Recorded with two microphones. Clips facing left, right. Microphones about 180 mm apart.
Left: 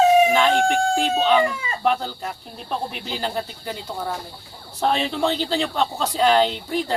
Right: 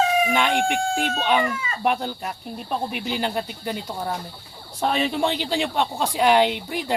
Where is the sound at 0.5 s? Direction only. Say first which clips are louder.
Left 3 dB; 15° right (ahead or behind).